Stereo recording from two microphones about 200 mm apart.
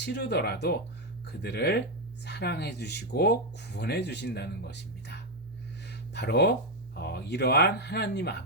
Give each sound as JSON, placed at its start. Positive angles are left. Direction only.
{"t": 0.0, "sound": "speech", "side_deg": 60}